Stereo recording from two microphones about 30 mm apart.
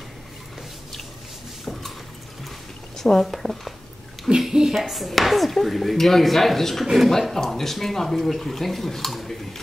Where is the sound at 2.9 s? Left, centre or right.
Centre.